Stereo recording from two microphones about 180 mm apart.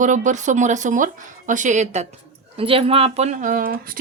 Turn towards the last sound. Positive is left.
turn(degrees=-50)  # may be behind; listen again after turning